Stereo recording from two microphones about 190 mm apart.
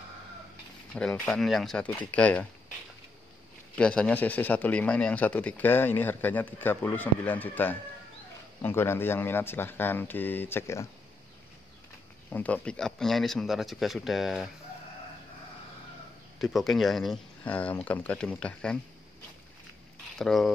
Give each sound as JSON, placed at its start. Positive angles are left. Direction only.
{"t": 0.9, "sound": "speech", "side_deg": 5}
{"t": 3.7, "sound": "speech", "side_deg": 5}
{"t": 12.3, "sound": "speech", "side_deg": 10}
{"t": 16.3, "sound": "speech", "side_deg": 0}
{"t": 20.2, "sound": "speech", "side_deg": 0}